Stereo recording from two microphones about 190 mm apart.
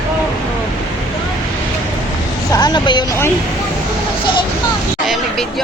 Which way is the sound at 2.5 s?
20° left (ahead or behind).